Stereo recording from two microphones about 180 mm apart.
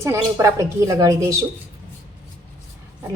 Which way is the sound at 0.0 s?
15° right (ahead or behind).